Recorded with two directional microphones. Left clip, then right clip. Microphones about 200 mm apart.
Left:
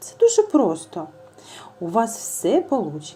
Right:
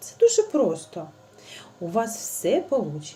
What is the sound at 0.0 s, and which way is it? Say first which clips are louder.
Speech: left 3 dB; 20° left (ahead or behind).